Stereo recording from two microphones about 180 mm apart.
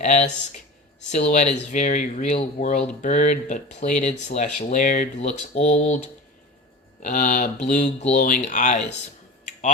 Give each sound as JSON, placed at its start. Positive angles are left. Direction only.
{"t": 0.0, "sound": "speech", "side_deg": 40}
{"t": 7.0, "sound": "speech", "side_deg": 45}
{"t": 9.5, "sound": "tick-tock", "side_deg": 45}